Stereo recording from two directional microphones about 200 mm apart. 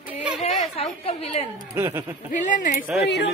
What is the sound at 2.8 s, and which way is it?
Speech, centre (ahead or behind).